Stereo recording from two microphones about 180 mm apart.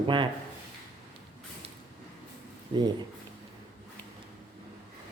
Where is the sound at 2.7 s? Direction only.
25° right (ahead or behind).